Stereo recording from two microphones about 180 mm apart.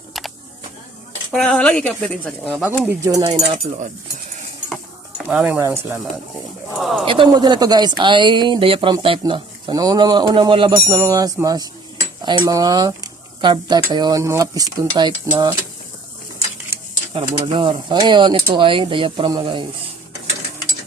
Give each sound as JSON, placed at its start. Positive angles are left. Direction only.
{"t": 0.1, "sound": "camera", "side_deg": 0}
{"t": 1.3, "sound": "a woman's voice", "side_deg": 5}
{"t": 2.6, "sound": "speech", "side_deg": -5}
{"t": 3.0, "sound": "speech", "side_deg": -20}
{"t": 3.3, "sound": "cutlery", "side_deg": -40}
{"t": 4.7, "sound": "cutlery", "side_deg": -5}
{"t": 6.7, "sound": "a woman's voice", "side_deg": 0}
{"t": 7.0, "sound": "speech", "side_deg": -30}
{"t": 17.2, "sound": "speech", "side_deg": -30}